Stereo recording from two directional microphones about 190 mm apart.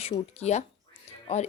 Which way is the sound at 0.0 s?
35° left (ahead or behind).